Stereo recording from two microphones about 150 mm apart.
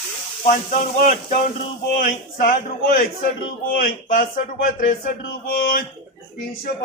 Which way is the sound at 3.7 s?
70° left (ahead or behind).